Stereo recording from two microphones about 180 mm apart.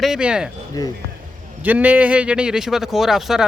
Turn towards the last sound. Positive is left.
turn(degrees=0)  # may be behind; listen again after turning